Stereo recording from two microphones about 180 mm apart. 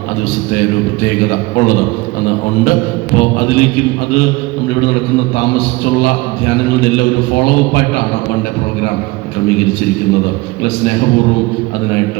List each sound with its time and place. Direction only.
3.2 s a man's voice: 65° left (ahead or behind)
6.9 s a man's voice: 65° left (ahead or behind)